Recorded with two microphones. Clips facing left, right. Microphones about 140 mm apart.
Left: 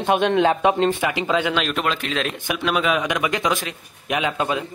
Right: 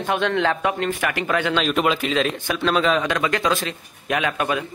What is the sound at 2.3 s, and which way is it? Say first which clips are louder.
Speech: right 2 dB; 15° left (ahead or behind).